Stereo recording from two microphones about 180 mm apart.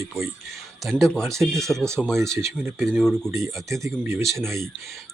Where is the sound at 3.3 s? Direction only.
15° right (ahead or behind).